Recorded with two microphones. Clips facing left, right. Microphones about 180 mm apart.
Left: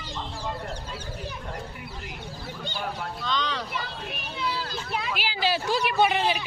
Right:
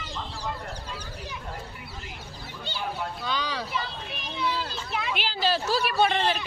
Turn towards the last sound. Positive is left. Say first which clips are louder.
# left 1 dB
turn(degrees=5)  # may be behind; listen again after turning